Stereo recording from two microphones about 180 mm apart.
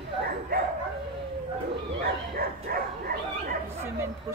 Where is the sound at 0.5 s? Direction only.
55° right (ahead or behind).